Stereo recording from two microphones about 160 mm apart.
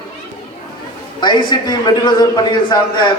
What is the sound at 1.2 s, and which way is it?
A man's voice, 30° left (ahead or behind).